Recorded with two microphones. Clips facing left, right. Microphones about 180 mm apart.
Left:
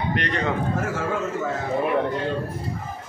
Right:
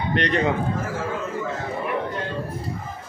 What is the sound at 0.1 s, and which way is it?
Speech, 25° right (ahead or behind).